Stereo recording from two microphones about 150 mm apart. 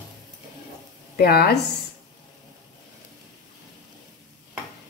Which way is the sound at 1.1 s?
90° left.